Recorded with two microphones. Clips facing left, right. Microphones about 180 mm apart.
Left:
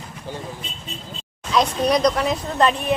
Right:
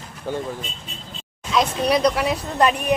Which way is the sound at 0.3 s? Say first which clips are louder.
Right 6 dB; 55° right (ahead or behind).